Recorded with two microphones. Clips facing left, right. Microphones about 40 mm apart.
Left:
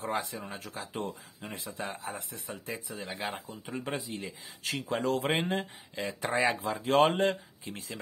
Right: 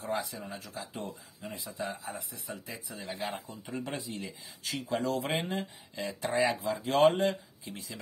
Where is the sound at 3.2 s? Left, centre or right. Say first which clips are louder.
Even; left.